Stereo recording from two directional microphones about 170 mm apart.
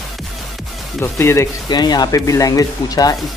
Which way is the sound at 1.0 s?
15° left (ahead or behind).